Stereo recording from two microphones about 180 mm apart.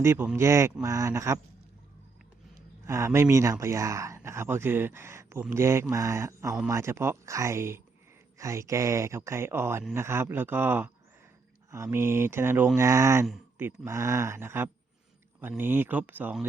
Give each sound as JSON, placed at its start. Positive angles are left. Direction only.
{"t": 0.0, "sound": "speech", "side_deg": -15}
{"t": 2.8, "sound": "speech", "side_deg": -15}